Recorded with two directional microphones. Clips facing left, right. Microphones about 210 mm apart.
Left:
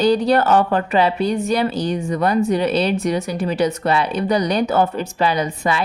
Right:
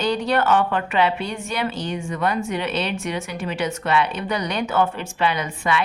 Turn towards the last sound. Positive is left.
turn(degrees=35)  # may be behind; listen again after turning